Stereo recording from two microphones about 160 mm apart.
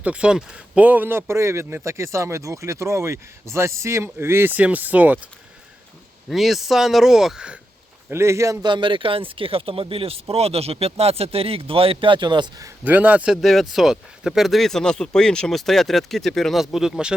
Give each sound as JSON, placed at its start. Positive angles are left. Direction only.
{"t": 0.0, "sound": "speech", "side_deg": -5}
{"t": 6.2, "sound": "speech", "side_deg": 0}
{"t": 8.1, "sound": "a man's voice", "side_deg": -15}
{"t": 12.8, "sound": "speech", "side_deg": -10}